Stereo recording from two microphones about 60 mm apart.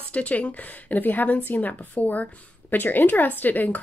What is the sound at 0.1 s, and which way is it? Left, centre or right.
Speech, left.